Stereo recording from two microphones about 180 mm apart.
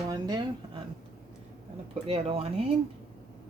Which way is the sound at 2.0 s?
35° right (ahead or behind).